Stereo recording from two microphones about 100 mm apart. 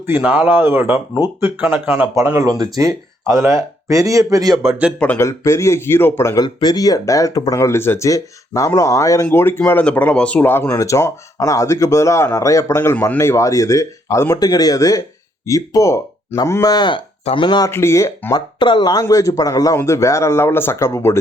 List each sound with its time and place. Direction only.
0.2 s speech: 15° right (ahead or behind)
2.7 s speech: 30° right (ahead or behind)
4.6 s speech: 5° right (ahead or behind)
5.1 s speech: 30° left (ahead or behind)
6.3 s speech: 45° left (ahead or behind); by 10.5 s 10° left (ahead or behind)
10.5 s speech: 25° left (ahead or behind)
16.7 s speech: 50° left (ahead or behind)
17.7 s speech: 25° left (ahead or behind)
18.3 s speech: 50° left (ahead or behind)
19.0 s speech: 30° left (ahead or behind)